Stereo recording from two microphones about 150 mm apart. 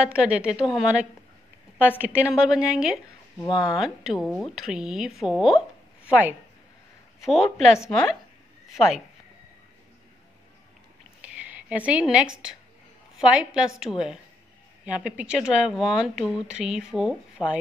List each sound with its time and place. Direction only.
0.0 s a woman's voice: 5° right (ahead or behind)
2.3 s speech: 5° right (ahead or behind)
3.4 s speech: 30° left (ahead or behind)
3.7 s a woman's voice: 5° right (ahead or behind)
11.1 s a sound: 10° right (ahead or behind)
13.2 s speech: 5° right (ahead or behind)
17.4 s speech: 30° left (ahead or behind)